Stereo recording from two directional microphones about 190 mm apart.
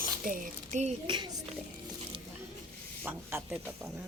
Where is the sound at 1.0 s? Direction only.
25° right (ahead or behind).